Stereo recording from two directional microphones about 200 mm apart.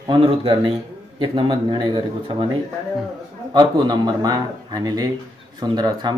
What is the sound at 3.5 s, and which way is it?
Speech, 20° right (ahead or behind).